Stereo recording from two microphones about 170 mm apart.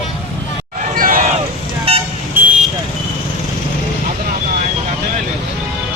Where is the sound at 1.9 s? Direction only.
35° right (ahead or behind).